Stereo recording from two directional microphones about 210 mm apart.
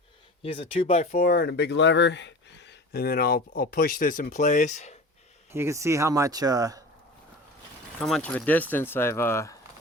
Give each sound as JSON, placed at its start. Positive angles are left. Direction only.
{"t": 0.4, "sound": "speech", "side_deg": 25}
{"t": 1.1, "sound": "speech", "side_deg": 45}
{"t": 5.5, "sound": "speech", "side_deg": -10}
{"t": 8.0, "sound": "speech", "side_deg": 5}